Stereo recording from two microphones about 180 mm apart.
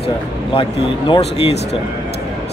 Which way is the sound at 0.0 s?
30° left (ahead or behind).